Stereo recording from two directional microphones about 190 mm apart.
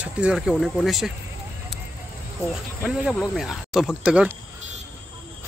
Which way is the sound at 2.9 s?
5° right (ahead or behind).